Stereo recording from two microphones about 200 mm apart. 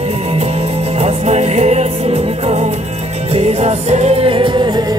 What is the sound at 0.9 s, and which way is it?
Music, 30° right (ahead or behind).